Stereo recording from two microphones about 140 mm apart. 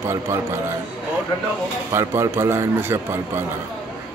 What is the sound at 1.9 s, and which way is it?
Speech, 20° right (ahead or behind).